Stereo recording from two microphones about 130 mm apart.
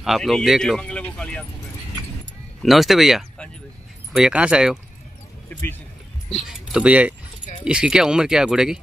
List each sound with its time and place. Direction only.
0.0 s speech: centre (ahead or behind)
2.6 s speech: centre (ahead or behind)
5.5 s speech: 15° left (ahead or behind)
6.3 s speech: 5° right (ahead or behind)